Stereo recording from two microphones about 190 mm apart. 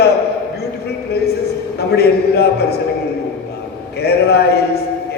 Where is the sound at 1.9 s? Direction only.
60° left (ahead or behind).